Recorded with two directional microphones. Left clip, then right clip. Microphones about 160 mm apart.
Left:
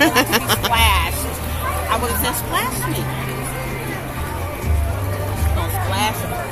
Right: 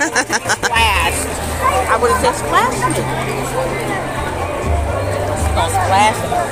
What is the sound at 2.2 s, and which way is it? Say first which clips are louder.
Speech: right 8 dB; 40° left (ahead or behind).